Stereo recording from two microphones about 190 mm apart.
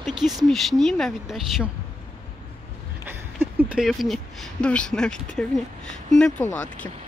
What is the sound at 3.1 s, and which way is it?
Speech, 10° right (ahead or behind).